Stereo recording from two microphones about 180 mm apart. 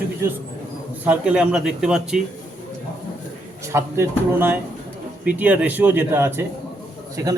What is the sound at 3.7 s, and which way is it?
Speech, 15° right (ahead or behind).